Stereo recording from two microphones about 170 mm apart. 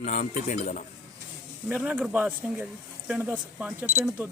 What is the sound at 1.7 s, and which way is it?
A man's voice, 5° right (ahead or behind).